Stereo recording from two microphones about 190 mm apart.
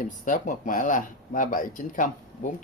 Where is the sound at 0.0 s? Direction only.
45° left (ahead or behind).